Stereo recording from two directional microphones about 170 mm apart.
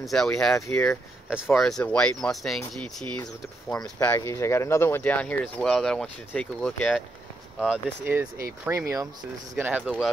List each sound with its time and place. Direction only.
0.0 s speech: centre (ahead or behind)